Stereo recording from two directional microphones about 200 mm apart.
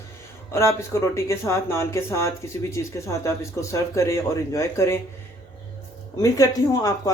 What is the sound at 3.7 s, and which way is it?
Speech, 15° left (ahead or behind).